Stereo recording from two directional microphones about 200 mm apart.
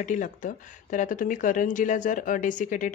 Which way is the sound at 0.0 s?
40° left (ahead or behind).